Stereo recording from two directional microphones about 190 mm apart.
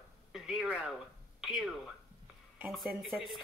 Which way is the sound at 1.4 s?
Centre (ahead or behind).